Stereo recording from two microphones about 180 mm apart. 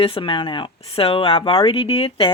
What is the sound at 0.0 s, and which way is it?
Speech, 30° left (ahead or behind).